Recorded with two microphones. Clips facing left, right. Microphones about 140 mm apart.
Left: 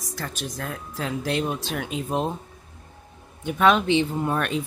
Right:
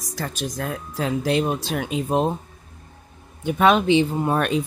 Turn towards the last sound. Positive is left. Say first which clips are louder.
# right 4 dB
turn(degrees=-20)  # may be behind; listen again after turning